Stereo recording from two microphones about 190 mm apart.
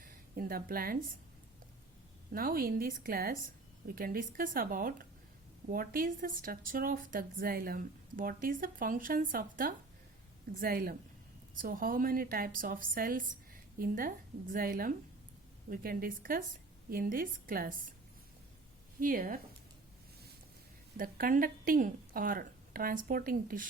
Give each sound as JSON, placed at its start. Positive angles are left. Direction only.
{"t": 0.0, "sound": "a woman's voice", "side_deg": -50}
{"t": 2.3, "sound": "a woman's voice", "side_deg": -50}
{"t": 18.9, "sound": "a woman's voice", "side_deg": -45}
{"t": 21.0, "sound": "a woman's voice", "side_deg": -50}